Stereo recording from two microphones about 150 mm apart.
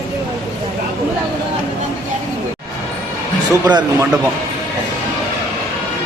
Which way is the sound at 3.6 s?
30° right (ahead or behind).